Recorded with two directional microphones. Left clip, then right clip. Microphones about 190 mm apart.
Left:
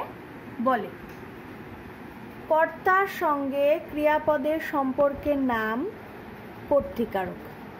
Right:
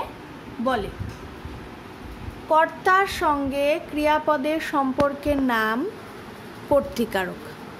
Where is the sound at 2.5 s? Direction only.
10° right (ahead or behind).